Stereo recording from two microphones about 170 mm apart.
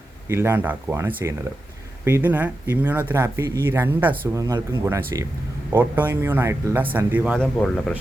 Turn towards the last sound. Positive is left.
turn(degrees=5)  # may be behind; listen again after turning